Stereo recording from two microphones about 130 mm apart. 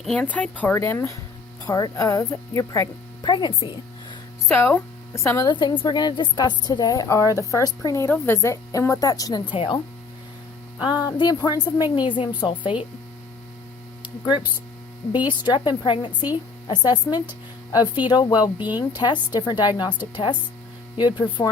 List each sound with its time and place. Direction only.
0.0 s a woman's voice: 5° left (ahead or behind)
0.8 s speech: 20° left (ahead or behind)
4.5 s speech: 15° left (ahead or behind)
5.5 s a woman's voice: 35° left (ahead or behind)
11.0 s a woman's voice: 30° left (ahead or behind)
14.0 s a woman's voice: 35° left (ahead or behind)
20.9 s a woman's voice: 35° left (ahead or behind)